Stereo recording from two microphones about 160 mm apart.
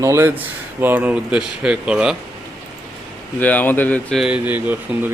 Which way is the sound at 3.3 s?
10° left (ahead or behind).